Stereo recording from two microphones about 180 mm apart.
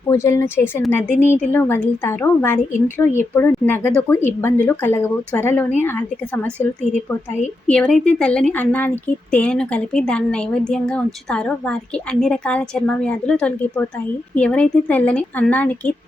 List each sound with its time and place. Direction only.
0.1 s speech: 15° left (ahead or behind)
6.9 s speech: 40° left (ahead or behind)
7.7 s a woman's voice: 5° left (ahead or behind)